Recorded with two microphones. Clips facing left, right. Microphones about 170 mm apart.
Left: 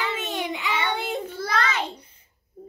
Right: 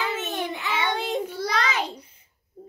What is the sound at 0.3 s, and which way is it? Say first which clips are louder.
Child singing: left 1 dB; 15° left (ahead or behind).